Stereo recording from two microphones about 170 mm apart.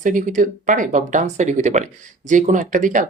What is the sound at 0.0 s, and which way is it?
Speech, 50° right (ahead or behind).